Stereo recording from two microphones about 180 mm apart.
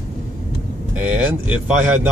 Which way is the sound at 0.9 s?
10° right (ahead or behind).